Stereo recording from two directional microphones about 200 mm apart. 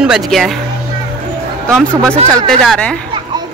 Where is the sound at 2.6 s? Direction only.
5° left (ahead or behind).